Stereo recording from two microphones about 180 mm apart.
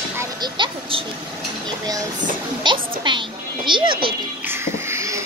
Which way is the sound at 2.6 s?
25° right (ahead or behind).